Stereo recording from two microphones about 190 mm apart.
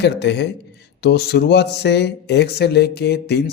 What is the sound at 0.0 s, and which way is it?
A man's voice, 65° left (ahead or behind).